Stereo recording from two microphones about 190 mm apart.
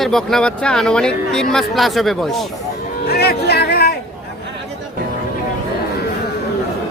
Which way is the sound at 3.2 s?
55° left (ahead or behind).